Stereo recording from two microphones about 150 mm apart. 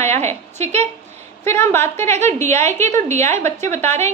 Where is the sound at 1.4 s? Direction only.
15° left (ahead or behind).